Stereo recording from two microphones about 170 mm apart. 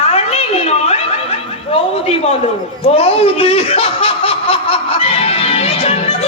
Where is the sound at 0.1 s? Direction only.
35° left (ahead or behind).